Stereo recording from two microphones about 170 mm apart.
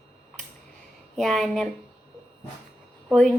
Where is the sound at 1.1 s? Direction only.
Centre (ahead or behind).